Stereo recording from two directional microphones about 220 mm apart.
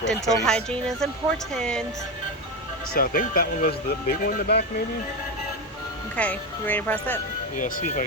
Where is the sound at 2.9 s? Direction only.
40° left (ahead or behind).